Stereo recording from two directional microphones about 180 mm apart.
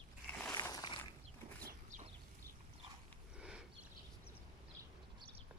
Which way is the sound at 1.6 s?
45° right (ahead or behind).